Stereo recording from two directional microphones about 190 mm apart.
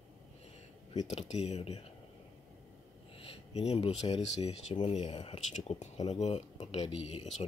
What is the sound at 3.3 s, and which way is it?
Speech, 35° left (ahead or behind).